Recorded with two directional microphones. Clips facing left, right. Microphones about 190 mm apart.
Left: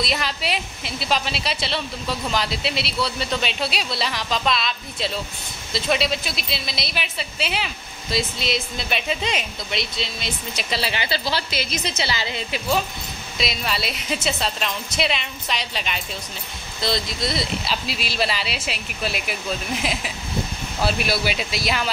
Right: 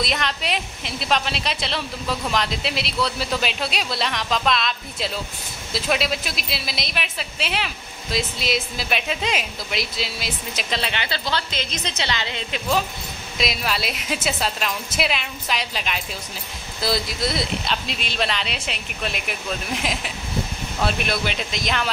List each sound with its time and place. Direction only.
0.0 s a woman's voice: centre (ahead or behind)